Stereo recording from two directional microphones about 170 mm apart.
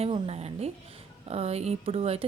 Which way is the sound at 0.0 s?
35° right (ahead or behind).